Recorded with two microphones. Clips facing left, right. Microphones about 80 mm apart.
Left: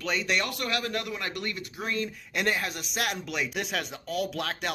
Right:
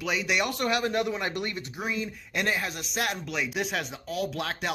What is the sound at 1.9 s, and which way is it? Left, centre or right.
Speech, centre.